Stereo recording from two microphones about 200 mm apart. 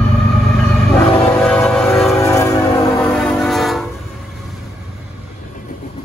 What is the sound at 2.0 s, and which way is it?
Change ringing, 15° left (ahead or behind).